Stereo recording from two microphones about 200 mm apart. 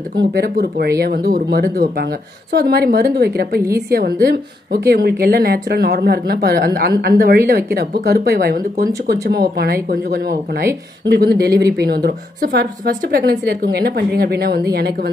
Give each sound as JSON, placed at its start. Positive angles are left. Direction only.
{"t": 0.1, "sound": "speech", "side_deg": -55}